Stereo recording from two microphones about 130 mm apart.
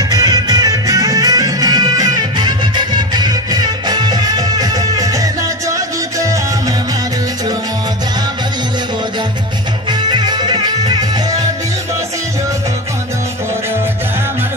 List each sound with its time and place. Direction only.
0.1 s music: 30° right (ahead or behind)
9.8 s music: 35° right (ahead or behind)